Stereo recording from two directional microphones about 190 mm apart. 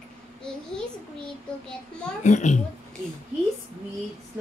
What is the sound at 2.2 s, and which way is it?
Speech, 40° left (ahead or behind).